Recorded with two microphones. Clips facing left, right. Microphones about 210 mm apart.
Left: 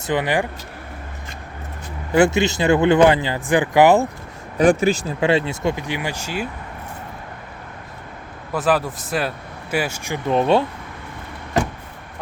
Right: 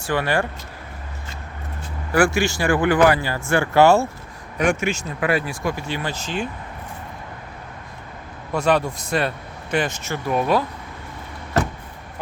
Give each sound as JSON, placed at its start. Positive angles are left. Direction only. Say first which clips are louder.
{"t": 0.0, "sound": "speech", "louder": "left 1 dB", "side_deg": 20}
{"t": 2.1, "sound": "speech", "louder": "left 3 dB", "side_deg": 20}
{"t": 4.5, "sound": "speech", "louder": "left 6 dB", "side_deg": 35}
{"t": 8.5, "sound": "speech", "louder": "even", "side_deg": 5}
{"t": 10.3, "sound": "speech", "louder": "left 3 dB", "side_deg": 25}